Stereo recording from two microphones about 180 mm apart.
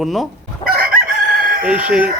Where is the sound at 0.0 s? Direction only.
Centre (ahead or behind).